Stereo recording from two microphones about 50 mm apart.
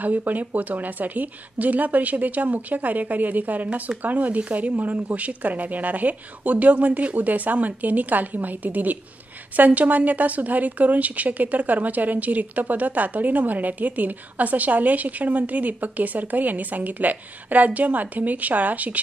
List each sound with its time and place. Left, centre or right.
0.0 s speech: right